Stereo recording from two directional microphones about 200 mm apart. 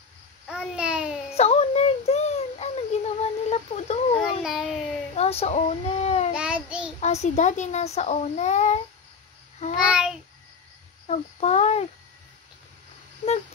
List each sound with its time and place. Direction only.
0.5 s babbling: 5° right (ahead or behind)
1.3 s a sound: 30° left (ahead or behind)
4.2 s babbling: centre (ahead or behind)
5.1 s child singing: 30° left (ahead or behind)
6.3 s child singing: 5° right (ahead or behind)
7.0 s a child's voice: 35° left (ahead or behind)
9.8 s a child's voice: 5° right (ahead or behind)
11.1 s a child's voice: 35° left (ahead or behind)